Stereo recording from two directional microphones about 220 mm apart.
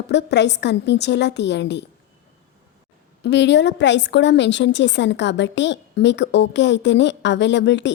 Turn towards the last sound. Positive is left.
turn(degrees=55)  # may be behind; listen again after turning